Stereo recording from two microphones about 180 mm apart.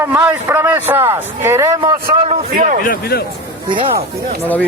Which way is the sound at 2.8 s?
55° left (ahead or behind).